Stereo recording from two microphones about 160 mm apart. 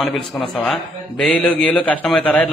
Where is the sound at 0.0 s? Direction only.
Centre (ahead or behind).